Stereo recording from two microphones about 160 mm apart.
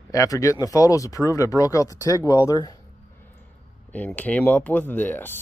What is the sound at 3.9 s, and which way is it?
Speech, 10° left (ahead or behind).